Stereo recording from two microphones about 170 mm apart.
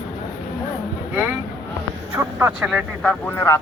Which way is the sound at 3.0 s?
5° left (ahead or behind).